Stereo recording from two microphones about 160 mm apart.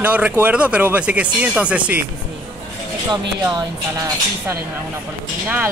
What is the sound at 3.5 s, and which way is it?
Speech, 20° right (ahead or behind).